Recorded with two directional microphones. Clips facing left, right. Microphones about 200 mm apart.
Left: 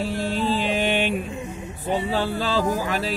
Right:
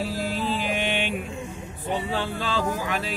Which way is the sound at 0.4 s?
30° left (ahead or behind).